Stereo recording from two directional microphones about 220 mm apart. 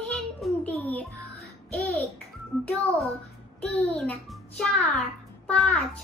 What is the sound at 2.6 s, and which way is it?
A child's voice, centre (ahead or behind).